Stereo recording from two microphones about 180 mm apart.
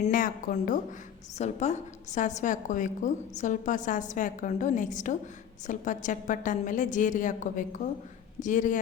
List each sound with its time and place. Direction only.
0.0 s a woman's voice: 50° left (ahead or behind)